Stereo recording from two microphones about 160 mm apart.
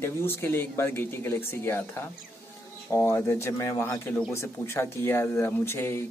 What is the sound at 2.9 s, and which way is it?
Speech, 15° left (ahead or behind).